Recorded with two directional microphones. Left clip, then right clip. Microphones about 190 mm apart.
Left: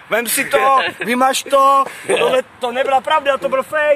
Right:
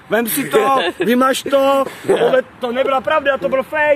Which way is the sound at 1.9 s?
20° right (ahead or behind).